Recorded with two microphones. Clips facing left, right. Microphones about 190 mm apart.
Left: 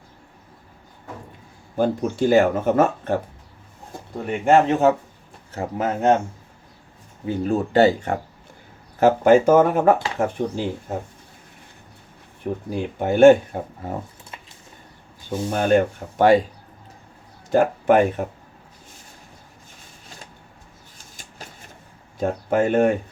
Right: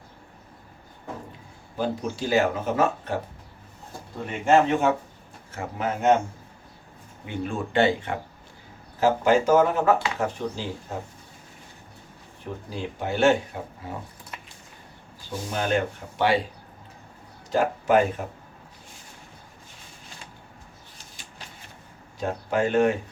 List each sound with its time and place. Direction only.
1.7 s speech: 55° left (ahead or behind)
4.4 s speech: 35° left (ahead or behind)
7.3 s speech: 40° left (ahead or behind)
9.0 s speech: 55° left (ahead or behind)
12.7 s speech: 50° left (ahead or behind)
15.3 s speech: 50° left (ahead or behind)
17.5 s speech: 55° left (ahead or behind)
22.2 s speech: 50° left (ahead or behind)